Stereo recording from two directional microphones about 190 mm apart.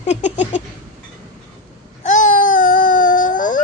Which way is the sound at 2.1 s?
40° left (ahead or behind).